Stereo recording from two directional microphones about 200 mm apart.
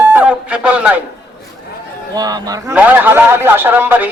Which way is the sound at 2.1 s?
20° right (ahead or behind).